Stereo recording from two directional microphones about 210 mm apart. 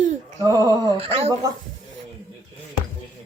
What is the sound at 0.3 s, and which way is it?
Speech, 15° right (ahead or behind).